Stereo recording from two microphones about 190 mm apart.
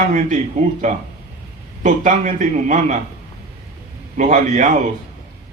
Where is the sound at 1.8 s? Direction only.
40° right (ahead or behind).